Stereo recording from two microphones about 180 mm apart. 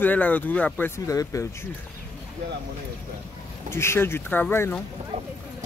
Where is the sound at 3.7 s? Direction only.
15° left (ahead or behind).